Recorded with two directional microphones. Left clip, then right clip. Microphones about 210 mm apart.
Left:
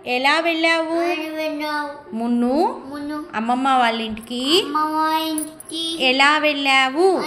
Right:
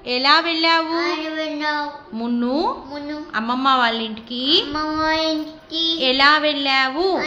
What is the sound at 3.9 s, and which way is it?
Speech, 35° right (ahead or behind).